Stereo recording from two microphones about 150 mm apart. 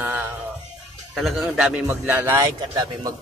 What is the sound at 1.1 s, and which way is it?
A man's voice, centre (ahead or behind).